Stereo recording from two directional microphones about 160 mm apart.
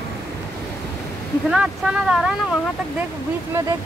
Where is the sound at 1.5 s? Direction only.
5° right (ahead or behind).